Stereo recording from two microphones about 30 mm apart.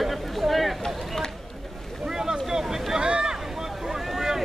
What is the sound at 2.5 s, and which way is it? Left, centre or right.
Vehicle, centre.